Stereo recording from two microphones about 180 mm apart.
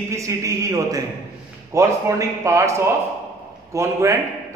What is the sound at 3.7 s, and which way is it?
Speech, 15° right (ahead or behind).